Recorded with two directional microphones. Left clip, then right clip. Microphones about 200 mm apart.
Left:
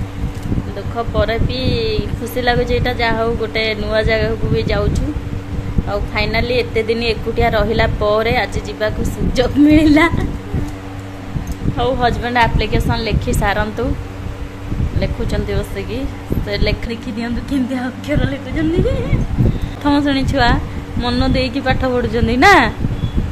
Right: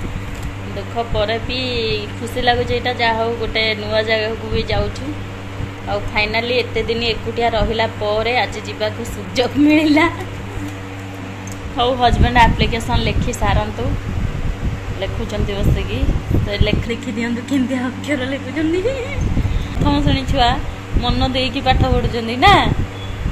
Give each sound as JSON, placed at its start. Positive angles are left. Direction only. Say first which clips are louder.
{"t": 0.9, "sound": "speech", "louder": "left 1 dB", "side_deg": 15}
{"t": 5.9, "sound": "speech", "louder": "right 1 dB", "side_deg": 15}
{"t": 11.7, "sound": "speech", "louder": "right 1 dB", "side_deg": 10}
{"t": 16.4, "sound": "speech", "louder": "left 2 dB", "side_deg": 20}
{"t": 17.7, "sound": "speech", "louder": "even", "side_deg": 0}
{"t": 19.8, "sound": "speech", "louder": "left 3 dB", "side_deg": 25}